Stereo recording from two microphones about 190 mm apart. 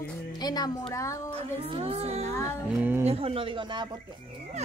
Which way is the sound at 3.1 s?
30° right (ahead or behind).